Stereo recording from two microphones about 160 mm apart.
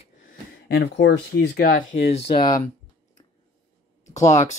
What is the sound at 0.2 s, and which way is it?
Speech, 65° left (ahead or behind).